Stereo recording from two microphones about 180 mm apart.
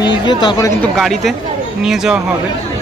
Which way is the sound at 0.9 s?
Centre (ahead or behind).